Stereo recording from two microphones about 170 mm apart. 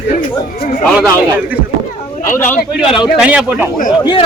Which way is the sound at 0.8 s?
5° right (ahead or behind).